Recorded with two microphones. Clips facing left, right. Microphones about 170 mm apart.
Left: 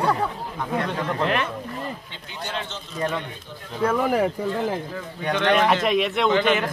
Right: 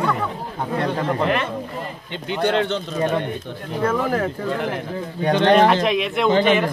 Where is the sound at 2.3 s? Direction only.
65° right (ahead or behind).